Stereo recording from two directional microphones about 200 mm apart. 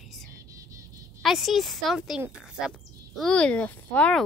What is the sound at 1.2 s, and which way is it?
A child's voice, centre (ahead or behind).